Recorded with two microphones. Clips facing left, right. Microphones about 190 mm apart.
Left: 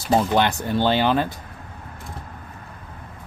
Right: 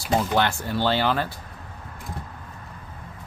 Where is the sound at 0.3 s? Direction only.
20° left (ahead or behind).